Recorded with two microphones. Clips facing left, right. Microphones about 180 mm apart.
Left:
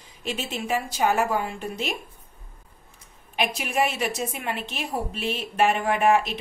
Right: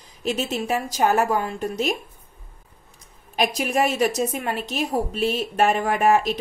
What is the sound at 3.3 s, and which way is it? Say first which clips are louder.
A woman's voice: right 4 dB; 40° right (ahead or behind).